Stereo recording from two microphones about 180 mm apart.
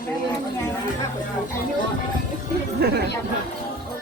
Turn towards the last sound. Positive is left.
turn(degrees=-65)  # may be behind; listen again after turning